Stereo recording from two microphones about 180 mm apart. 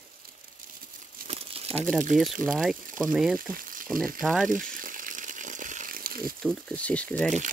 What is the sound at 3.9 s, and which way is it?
Speech, 50° right (ahead or behind).